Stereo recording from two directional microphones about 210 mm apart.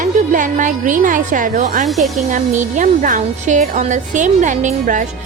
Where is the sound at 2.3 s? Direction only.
35° right (ahead or behind).